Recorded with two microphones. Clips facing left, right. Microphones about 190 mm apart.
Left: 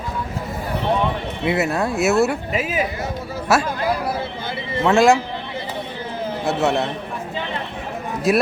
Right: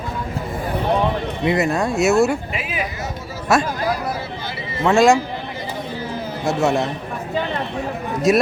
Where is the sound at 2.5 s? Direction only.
40° left (ahead or behind).